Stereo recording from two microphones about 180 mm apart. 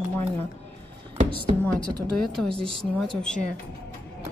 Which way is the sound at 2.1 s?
5° left (ahead or behind).